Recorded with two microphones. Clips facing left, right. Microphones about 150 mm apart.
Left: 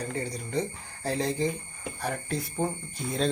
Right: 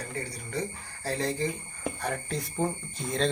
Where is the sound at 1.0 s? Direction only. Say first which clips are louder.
Left 2 dB; 20° left (ahead or behind).